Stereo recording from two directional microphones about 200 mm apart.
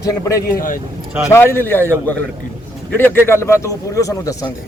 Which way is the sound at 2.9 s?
10° left (ahead or behind).